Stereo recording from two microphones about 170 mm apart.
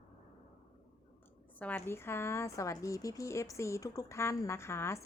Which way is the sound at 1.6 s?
10° left (ahead or behind).